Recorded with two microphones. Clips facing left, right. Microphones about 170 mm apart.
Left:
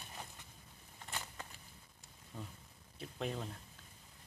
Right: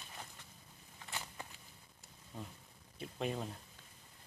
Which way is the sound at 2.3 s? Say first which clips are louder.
Right 1 dB; 15° right (ahead or behind).